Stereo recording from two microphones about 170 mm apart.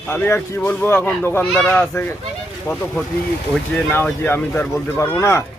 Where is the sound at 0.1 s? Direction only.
15° left (ahead or behind).